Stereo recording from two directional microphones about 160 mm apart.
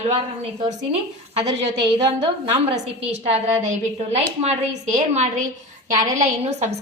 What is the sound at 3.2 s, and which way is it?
A woman's voice, 40° right (ahead or behind).